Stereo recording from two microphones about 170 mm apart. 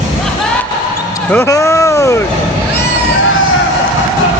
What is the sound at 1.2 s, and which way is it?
Speech, 15° left (ahead or behind).